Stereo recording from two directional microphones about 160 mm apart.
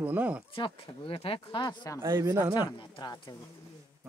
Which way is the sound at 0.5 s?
35° left (ahead or behind).